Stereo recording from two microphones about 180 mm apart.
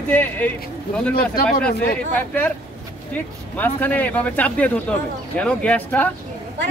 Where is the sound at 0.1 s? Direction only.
10° left (ahead or behind).